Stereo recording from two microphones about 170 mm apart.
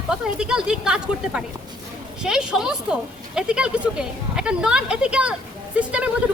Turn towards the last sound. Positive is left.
turn(degrees=-5)  # may be behind; listen again after turning